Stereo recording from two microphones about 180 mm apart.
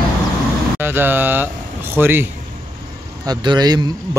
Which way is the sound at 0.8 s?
10° right (ahead or behind).